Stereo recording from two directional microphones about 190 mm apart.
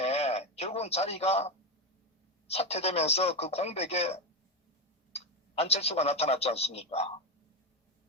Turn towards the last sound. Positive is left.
turn(degrees=35)  # may be behind; listen again after turning